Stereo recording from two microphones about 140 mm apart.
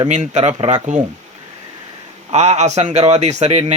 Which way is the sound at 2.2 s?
50° right (ahead or behind).